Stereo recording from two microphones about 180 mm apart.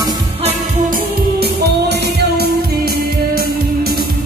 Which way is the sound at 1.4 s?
65° right (ahead or behind).